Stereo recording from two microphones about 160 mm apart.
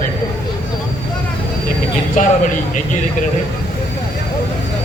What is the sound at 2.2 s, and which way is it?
Speech, 55° left (ahead or behind).